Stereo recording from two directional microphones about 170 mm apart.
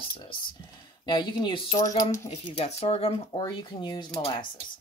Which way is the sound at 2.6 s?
35° left (ahead or behind).